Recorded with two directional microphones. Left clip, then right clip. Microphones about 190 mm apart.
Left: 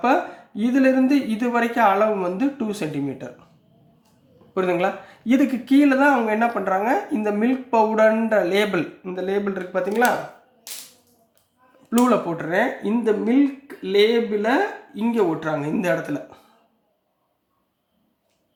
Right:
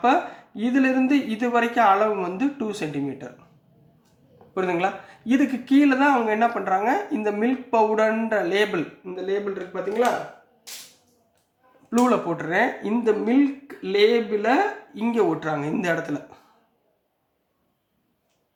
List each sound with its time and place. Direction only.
0.0 s speech: 15° left (ahead or behind)
4.5 s a woman's voice: 20° left (ahead or behind)
9.0 s speech: 40° left (ahead or behind)
11.9 s speech: 10° left (ahead or behind)